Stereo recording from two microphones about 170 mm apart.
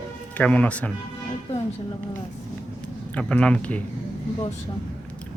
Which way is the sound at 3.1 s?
5° left (ahead or behind).